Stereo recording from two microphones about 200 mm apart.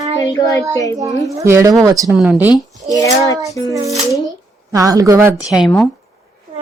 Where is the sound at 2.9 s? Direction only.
15° left (ahead or behind).